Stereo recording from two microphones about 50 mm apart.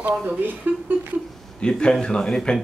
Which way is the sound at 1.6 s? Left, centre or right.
Centre.